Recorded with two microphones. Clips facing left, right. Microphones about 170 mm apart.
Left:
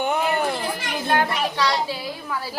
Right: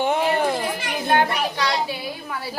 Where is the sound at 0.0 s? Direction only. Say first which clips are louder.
Right 2 dB; 30° right (ahead or behind).